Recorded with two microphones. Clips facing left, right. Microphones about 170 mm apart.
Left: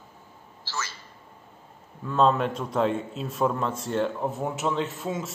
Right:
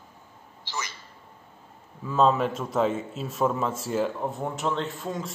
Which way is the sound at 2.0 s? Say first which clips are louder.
Even; centre (ahead or behind).